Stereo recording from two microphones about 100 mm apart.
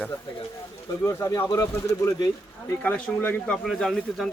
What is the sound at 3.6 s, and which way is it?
Speech, 5° left (ahead or behind).